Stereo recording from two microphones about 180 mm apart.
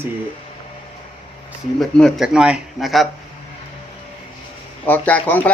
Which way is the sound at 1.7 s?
Centre (ahead or behind).